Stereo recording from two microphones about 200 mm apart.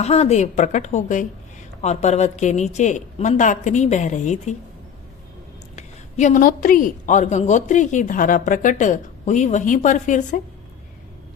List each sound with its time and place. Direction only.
0.0 s a woman's voice: 30° left (ahead or behind)
5.7 s a woman's voice: 35° left (ahead or behind)